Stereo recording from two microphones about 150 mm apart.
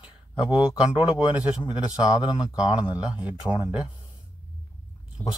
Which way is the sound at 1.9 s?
30° left (ahead or behind).